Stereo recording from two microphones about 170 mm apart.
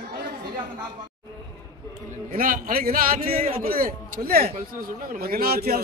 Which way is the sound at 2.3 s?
55° right (ahead or behind).